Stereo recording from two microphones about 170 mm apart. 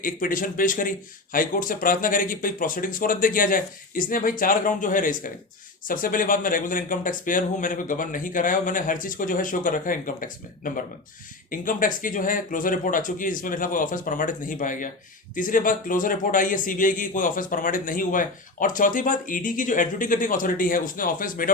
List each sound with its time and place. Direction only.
0.0 s a man's voice: 55° left (ahead or behind)